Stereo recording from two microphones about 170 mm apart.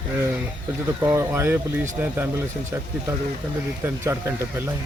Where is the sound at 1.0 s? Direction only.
15° right (ahead or behind).